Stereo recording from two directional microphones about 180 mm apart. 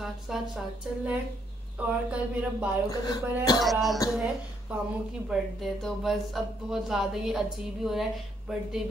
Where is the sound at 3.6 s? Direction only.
Centre (ahead or behind).